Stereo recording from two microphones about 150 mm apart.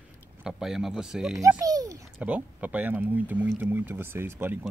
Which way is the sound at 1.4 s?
25° right (ahead or behind).